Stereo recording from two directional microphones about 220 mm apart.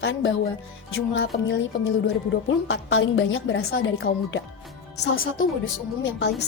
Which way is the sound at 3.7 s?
55° left (ahead or behind).